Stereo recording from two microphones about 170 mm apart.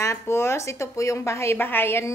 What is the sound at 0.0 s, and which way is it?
A woman's voice, 15° left (ahead or behind).